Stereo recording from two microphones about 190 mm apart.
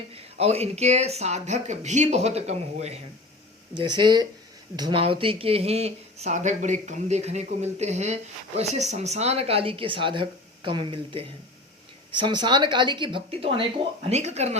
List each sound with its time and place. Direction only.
0.1 s speech: 30° right (ahead or behind)
3.8 s speech: 25° right (ahead or behind)